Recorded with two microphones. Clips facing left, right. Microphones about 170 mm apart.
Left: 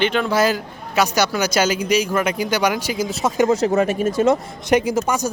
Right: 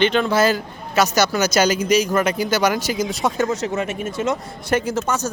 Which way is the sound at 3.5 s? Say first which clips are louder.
Left 6 dB; 35° left (ahead or behind).